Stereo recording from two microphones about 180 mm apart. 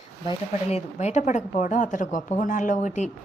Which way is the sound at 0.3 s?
35° left (ahead or behind).